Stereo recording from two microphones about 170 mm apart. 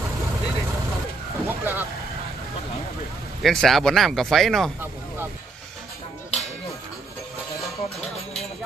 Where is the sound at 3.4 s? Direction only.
Centre (ahead or behind).